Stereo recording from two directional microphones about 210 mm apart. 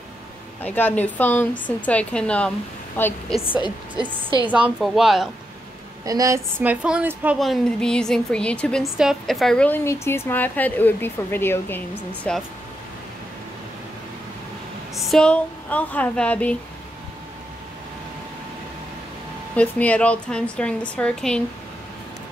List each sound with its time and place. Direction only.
0.7 s a woman's voice: 5° left (ahead or behind)
3.3 s speech: 25° left (ahead or behind)
4.5 s a woman's voice: 5° right (ahead or behind)
6.0 s a woman's voice: 15° right (ahead or behind); by 12.4 s 5° left (ahead or behind)
15.0 s a woman's voice: centre (ahead or behind)
19.5 s a woman's voice: 5° left (ahead or behind)